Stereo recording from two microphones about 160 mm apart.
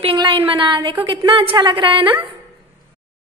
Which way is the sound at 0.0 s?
30° right (ahead or behind).